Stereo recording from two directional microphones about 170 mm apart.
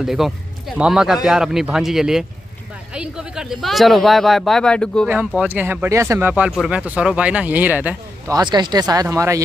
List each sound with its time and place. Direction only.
0.0 s speech: centre (ahead or behind)
5.0 s speech: 5° right (ahead or behind)
8.3 s speech: 25° right (ahead or behind)